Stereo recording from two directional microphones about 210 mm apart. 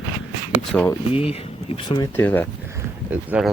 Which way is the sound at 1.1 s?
30° left (ahead or behind).